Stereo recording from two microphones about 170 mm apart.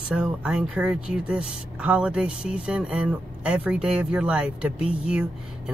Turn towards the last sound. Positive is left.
turn(degrees=-5)  # may be behind; listen again after turning